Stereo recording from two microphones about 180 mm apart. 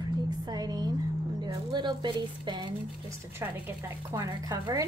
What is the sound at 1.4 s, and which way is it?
Speech, 25° right (ahead or behind).